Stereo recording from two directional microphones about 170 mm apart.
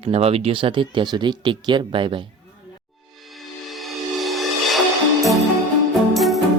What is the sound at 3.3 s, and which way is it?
Music, centre (ahead or behind).